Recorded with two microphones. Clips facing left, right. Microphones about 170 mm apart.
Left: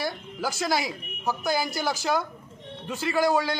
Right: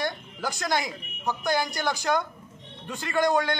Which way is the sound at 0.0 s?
5° left (ahead or behind).